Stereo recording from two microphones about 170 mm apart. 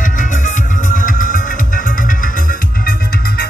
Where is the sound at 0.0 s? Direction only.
50° left (ahead or behind).